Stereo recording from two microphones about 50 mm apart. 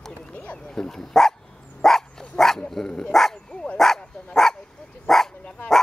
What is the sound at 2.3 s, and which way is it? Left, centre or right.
Dog, centre.